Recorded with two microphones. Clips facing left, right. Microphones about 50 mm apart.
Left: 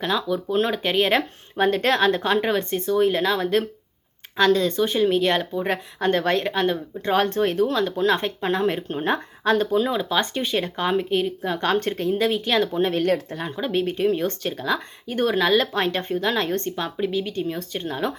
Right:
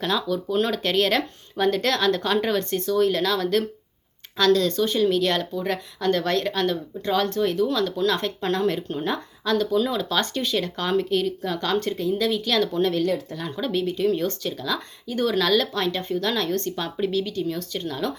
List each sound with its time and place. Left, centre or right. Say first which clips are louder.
0.0 s speech: left 1 dB; centre
7.1 s speech: left 2 dB; left
13.1 s speech: left 3 dB; left
13.4 s speech: left 1 dB; left
16.7 s speech: even; centre
17.2 s speech: even; left